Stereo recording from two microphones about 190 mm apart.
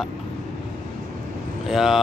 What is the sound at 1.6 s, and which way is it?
Speech, centre (ahead or behind).